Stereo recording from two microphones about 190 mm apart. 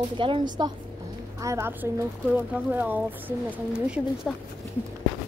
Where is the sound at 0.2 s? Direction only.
25° right (ahead or behind); by 4.3 s 5° right (ahead or behind).